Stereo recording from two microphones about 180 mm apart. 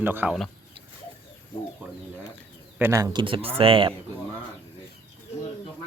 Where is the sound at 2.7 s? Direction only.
15° right (ahead or behind); by 3.9 s 30° right (ahead or behind).